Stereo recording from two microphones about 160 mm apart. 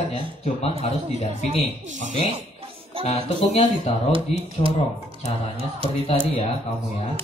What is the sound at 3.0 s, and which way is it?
Speech, 40° left (ahead or behind).